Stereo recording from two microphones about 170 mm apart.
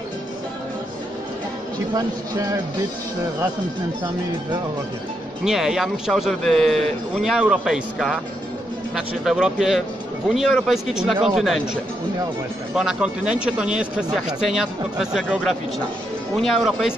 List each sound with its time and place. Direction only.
2.0 s speech: 20° right (ahead or behind)
5.4 s a man's voice: 5° right (ahead or behind)